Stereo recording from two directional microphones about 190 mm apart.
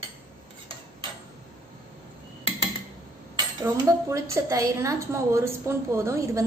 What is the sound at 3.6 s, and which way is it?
A woman's voice, 15° right (ahead or behind).